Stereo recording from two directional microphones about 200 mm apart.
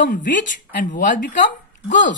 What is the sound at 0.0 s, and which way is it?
Speech, 40° left (ahead or behind).